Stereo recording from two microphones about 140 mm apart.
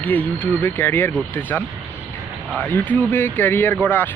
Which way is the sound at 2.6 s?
15° left (ahead or behind).